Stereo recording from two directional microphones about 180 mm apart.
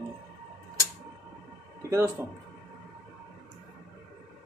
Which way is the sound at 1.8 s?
15° right (ahead or behind).